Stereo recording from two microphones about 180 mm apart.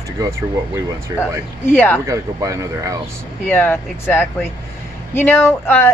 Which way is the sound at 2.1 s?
15° right (ahead or behind).